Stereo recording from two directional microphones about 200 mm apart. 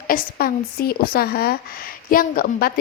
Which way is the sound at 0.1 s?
45° left (ahead or behind).